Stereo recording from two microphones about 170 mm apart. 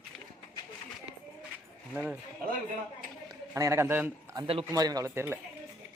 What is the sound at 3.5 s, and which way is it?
A man's voice, 15° right (ahead or behind).